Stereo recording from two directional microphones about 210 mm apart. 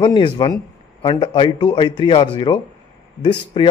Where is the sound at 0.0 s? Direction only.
20° left (ahead or behind).